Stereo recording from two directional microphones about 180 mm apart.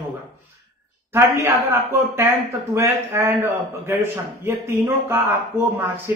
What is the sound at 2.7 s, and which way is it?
Speech, 15° right (ahead or behind).